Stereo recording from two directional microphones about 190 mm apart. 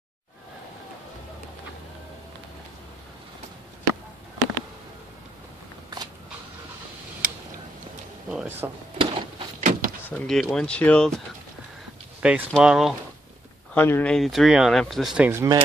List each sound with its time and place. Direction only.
7.2 s a sound: 45° right (ahead or behind)
8.3 s music: 5° right (ahead or behind)
8.9 s a sound: 30° right (ahead or behind)
9.6 s door: 45° right (ahead or behind)
10.0 s speech: 5° left (ahead or behind)
12.2 s speech: 5° right (ahead or behind)
13.7 s speech: 10° left (ahead or behind)
15.2 s speech: 15° right (ahead or behind)